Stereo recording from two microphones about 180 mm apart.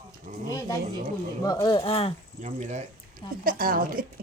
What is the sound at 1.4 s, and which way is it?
Speech, 25° left (ahead or behind).